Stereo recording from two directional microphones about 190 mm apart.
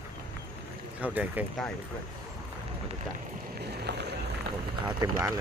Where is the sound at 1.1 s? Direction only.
10° right (ahead or behind).